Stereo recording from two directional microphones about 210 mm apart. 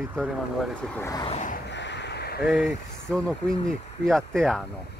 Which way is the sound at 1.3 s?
35° left (ahead or behind).